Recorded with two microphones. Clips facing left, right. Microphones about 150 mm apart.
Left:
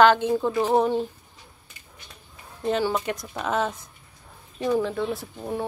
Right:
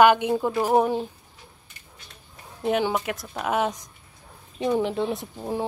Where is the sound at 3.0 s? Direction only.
5° right (ahead or behind).